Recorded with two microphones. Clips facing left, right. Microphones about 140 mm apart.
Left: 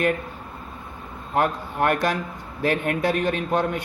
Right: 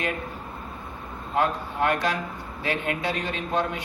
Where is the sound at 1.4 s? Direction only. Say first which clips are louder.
Left 2 dB; 55° left (ahead or behind).